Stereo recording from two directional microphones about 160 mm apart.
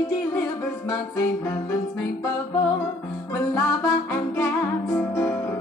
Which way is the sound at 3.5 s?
15° left (ahead or behind).